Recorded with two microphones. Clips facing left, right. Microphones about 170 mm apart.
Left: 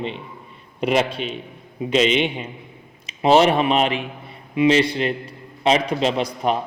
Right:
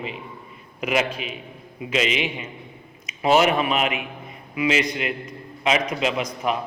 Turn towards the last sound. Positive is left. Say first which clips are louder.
# left 3 dB
turn(degrees=35)  # may be behind; listen again after turning